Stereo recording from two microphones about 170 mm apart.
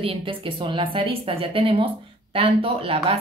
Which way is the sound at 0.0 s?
30° right (ahead or behind).